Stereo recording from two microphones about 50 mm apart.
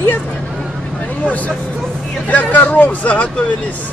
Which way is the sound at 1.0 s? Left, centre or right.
Left.